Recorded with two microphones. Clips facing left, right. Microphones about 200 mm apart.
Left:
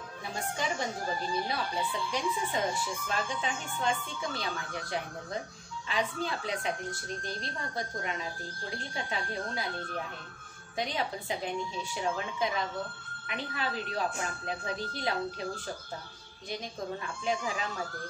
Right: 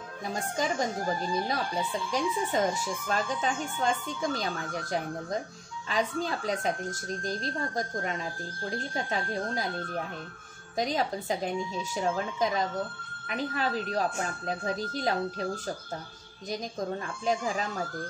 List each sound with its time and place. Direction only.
0.3 s speech: 40° right (ahead or behind)
10.8 s speech: 40° right (ahead or behind)
17.2 s speech: 40° right (ahead or behind)